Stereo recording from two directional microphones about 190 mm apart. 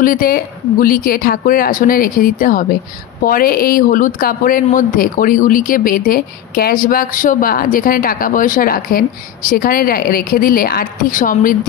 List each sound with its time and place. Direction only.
0.0 s speech: 50° left (ahead or behind)